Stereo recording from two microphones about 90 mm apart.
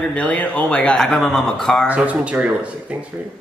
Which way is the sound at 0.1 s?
15° left (ahead or behind).